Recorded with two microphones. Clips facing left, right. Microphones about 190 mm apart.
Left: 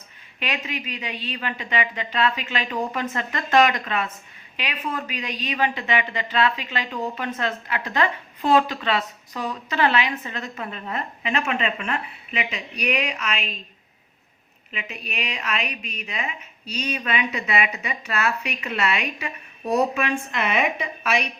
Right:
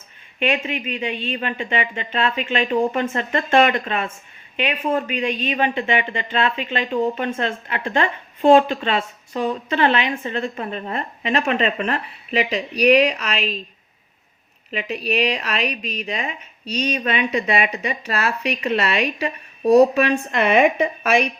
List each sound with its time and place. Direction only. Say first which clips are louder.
0.3 s speech: right 8 dB; 25° right (ahead or behind)
14.7 s a woman's voice: right 11 dB; 35° right (ahead or behind)